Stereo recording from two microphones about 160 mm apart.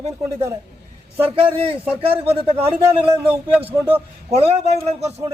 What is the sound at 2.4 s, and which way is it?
A man's voice, 35° right (ahead or behind).